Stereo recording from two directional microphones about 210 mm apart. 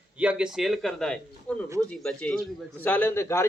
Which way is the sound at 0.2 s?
5° right (ahead or behind).